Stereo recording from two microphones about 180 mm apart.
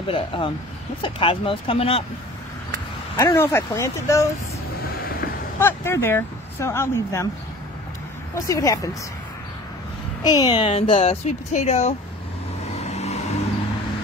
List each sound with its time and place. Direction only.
0.0 s speech: 30° left (ahead or behind)
3.2 s speech: 15° left (ahead or behind)
4.8 s a sound: 55° left (ahead or behind)
5.6 s speech: 10° left (ahead or behind)
8.5 s speech: 20° left (ahead or behind)
10.2 s speech: 20° left (ahead or behind); by 11.9 s 35° left (ahead or behind)
12.7 s vehicle: 35° left (ahead or behind)